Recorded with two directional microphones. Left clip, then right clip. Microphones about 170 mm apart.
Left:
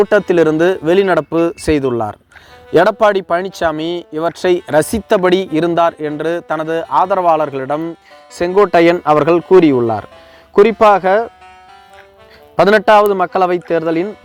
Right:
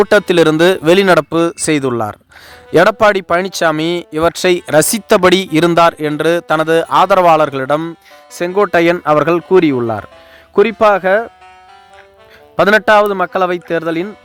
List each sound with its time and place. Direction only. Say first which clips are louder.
0.1 s speech: right 2 dB; 30° right (ahead or behind)
1.3 s speech: even; 20° right (ahead or behind)
8.4 s speech: left 2 dB; 20° right (ahead or behind)
12.5 s speech: even; 20° right (ahead or behind)